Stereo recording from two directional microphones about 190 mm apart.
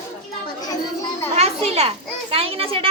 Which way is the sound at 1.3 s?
35° right (ahead or behind).